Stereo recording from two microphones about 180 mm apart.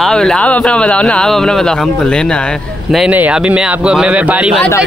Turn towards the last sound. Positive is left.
turn(degrees=-5)  # may be behind; listen again after turning